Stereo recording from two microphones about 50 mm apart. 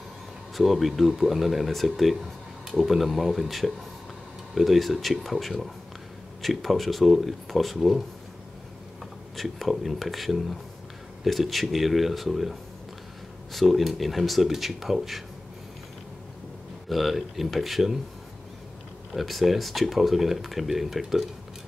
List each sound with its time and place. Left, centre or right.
0.6 s speech: centre
9.4 s speech: centre
16.9 s speech: centre
19.1 s speech: centre